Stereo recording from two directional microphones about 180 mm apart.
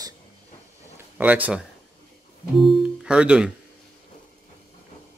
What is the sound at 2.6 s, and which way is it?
Speech, 5° right (ahead or behind).